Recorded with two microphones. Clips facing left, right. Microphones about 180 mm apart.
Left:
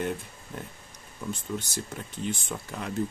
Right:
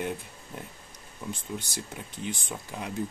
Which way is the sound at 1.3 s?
15° right (ahead or behind).